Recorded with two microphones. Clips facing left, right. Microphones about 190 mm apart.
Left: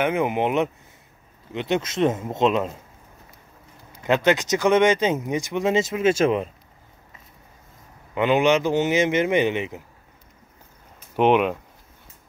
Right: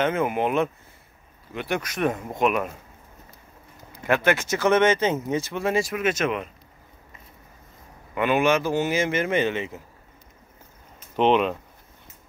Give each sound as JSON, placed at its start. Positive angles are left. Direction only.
{"t": 0.0, "sound": "speech", "side_deg": 15}
{"t": 4.0, "sound": "speech", "side_deg": 20}
{"t": 8.1, "sound": "speech", "side_deg": 20}
{"t": 11.1, "sound": "speech", "side_deg": 15}